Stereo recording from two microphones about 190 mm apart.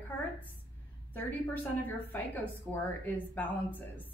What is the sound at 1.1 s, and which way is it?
A woman's voice, 10° left (ahead or behind).